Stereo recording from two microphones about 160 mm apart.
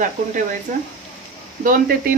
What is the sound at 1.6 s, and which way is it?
Frying, 60° right (ahead or behind).